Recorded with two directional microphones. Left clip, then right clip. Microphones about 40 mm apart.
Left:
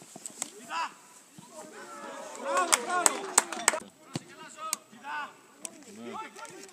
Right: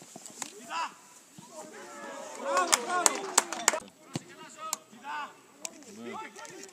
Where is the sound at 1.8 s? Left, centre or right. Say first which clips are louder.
Left 1 dB; right.